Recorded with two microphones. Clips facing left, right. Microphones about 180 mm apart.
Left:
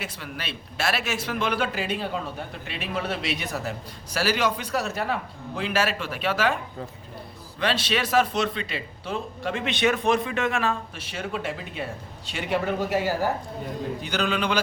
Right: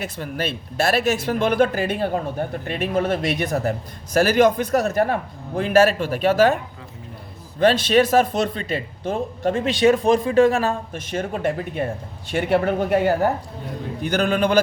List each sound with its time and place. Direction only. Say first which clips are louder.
0.0 s speech: right 9 dB; 45° right (ahead or behind)
7.6 s speech: right 10 dB; 45° right (ahead or behind)